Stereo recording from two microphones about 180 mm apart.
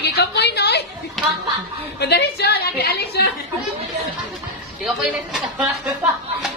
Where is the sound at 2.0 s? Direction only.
65° left (ahead or behind).